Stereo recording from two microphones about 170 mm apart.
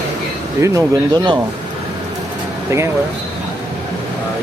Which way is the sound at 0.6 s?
20° right (ahead or behind).